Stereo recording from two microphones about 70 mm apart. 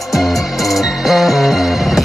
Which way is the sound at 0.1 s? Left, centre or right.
Centre.